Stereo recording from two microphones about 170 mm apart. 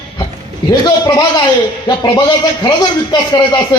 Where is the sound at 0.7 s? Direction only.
25° left (ahead or behind).